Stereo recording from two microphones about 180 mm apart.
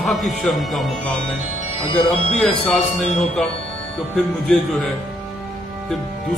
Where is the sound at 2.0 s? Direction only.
5° left (ahead or behind).